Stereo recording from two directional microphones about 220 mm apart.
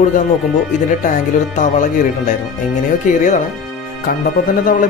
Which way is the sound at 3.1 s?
35° left (ahead or behind).